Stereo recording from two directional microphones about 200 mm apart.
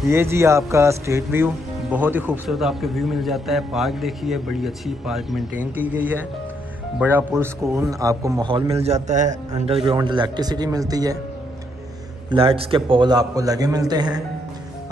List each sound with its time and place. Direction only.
0.1 s a man's voice: 15° right (ahead or behind)
12.3 s a man's voice: 25° right (ahead or behind)